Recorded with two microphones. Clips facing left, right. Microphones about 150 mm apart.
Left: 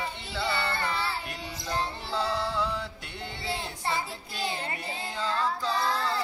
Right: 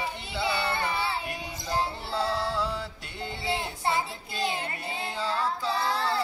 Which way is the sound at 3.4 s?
20° right (ahead or behind).